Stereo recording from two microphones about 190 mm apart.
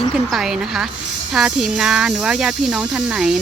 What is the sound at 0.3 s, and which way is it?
Speech, 5° right (ahead or behind).